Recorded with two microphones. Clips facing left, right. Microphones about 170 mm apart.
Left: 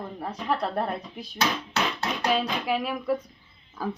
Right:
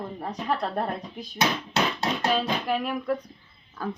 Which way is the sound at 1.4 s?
20° right (ahead or behind).